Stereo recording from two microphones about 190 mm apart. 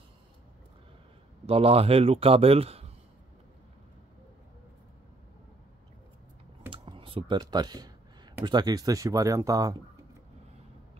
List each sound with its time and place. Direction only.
1.4 s a man's voice: 30° right (ahead or behind)
6.7 s computer keyboard: 25° right (ahead or behind)
8.5 s speech: 20° right (ahead or behind)